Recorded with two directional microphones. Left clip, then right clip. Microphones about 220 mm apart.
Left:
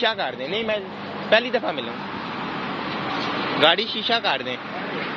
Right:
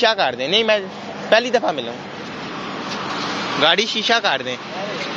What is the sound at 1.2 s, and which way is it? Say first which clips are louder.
Speech: right 4 dB; 20° right (ahead or behind).